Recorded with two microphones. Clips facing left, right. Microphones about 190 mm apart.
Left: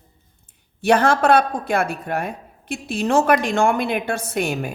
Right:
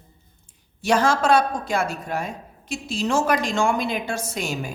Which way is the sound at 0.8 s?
60° left (ahead or behind).